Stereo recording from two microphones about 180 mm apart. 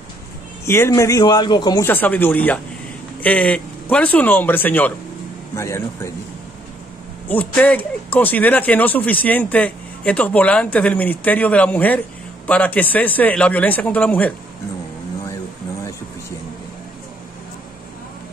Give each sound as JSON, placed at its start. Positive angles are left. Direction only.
{"t": 0.7, "sound": "speech", "side_deg": 15}
{"t": 1.9, "sound": "speech", "side_deg": 10}
{"t": 7.2, "sound": "speech", "side_deg": 10}